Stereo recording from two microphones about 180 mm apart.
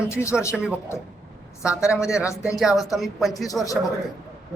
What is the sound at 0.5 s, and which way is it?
Speech, 5° right (ahead or behind).